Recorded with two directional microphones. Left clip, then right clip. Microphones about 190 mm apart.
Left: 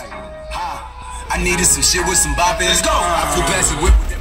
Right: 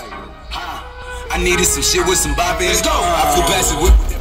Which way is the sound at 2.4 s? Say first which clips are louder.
Left 1 dB; 35° left (ahead or behind).